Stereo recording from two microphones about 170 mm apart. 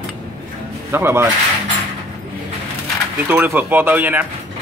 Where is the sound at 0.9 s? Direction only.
15° right (ahead or behind).